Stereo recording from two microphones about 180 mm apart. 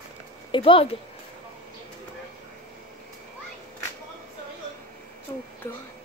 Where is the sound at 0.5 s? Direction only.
30° left (ahead or behind).